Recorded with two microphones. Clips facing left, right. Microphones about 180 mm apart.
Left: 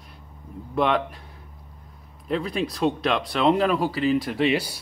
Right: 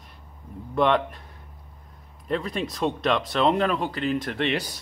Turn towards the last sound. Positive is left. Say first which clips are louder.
# left 4 dB
turn(degrees=5)  # may be behind; listen again after turning